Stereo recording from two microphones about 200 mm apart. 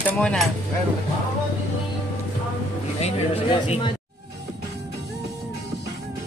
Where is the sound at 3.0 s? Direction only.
30° left (ahead or behind).